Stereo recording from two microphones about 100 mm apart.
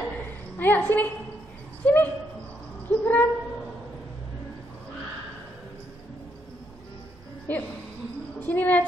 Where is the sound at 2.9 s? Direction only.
15° left (ahead or behind).